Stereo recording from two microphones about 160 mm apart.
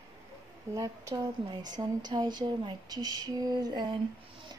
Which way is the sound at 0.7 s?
20° right (ahead or behind).